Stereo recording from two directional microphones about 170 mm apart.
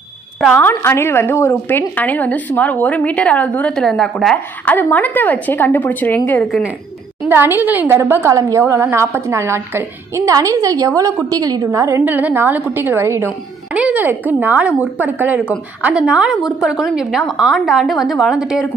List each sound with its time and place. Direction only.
0.5 s a woman's voice: 10° left (ahead or behind)
7.2 s a woman's voice: 10° right (ahead or behind)